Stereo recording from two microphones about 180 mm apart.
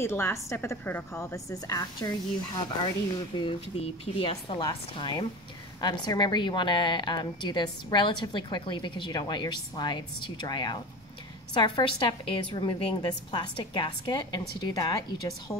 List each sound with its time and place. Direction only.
0.0 s a woman's voice: 15° left (ahead or behind)